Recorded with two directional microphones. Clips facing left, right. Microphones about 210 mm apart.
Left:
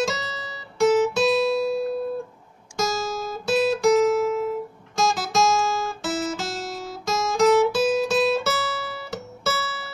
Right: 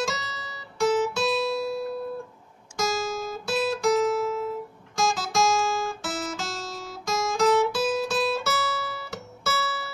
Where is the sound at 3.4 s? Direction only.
20° left (ahead or behind).